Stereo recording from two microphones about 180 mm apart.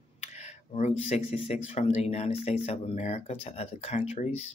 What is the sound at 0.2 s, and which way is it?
Speech, 40° left (ahead or behind).